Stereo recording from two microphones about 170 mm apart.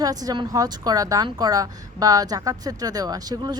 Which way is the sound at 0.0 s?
20° right (ahead or behind).